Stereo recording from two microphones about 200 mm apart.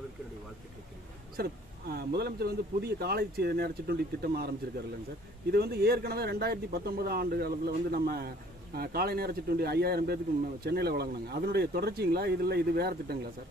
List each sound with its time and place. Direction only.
1.3 s speech: 50° right (ahead or behind)
5.5 s speech: 50° right (ahead or behind)